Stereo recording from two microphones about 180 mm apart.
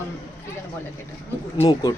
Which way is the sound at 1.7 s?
20° left (ahead or behind).